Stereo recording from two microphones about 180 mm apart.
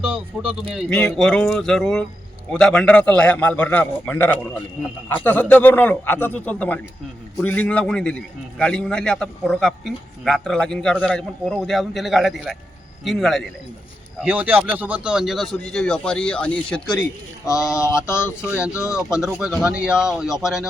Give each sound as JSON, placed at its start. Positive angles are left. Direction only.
{"t": 0.0, "sound": "a man's voice", "side_deg": -5}
{"t": 17.4, "sound": "a man's voice", "side_deg": 15}
{"t": 18.4, "sound": "a man's voice", "side_deg": -5}